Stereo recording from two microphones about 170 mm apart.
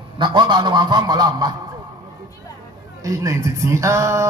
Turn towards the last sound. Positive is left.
turn(degrees=-15)  # may be behind; listen again after turning